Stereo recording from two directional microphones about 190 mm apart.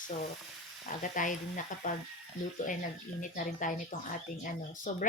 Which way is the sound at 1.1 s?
45° left (ahead or behind).